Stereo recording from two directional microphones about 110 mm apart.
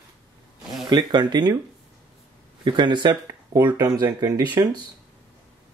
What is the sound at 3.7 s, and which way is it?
Speech, 35° right (ahead or behind).